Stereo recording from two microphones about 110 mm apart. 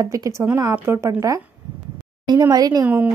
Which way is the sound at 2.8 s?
15° right (ahead or behind).